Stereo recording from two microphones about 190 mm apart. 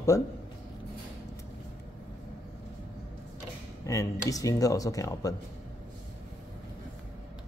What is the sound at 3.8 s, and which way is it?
Speech, 15° left (ahead or behind).